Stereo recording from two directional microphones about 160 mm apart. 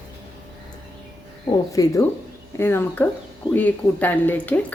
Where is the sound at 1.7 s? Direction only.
20° left (ahead or behind).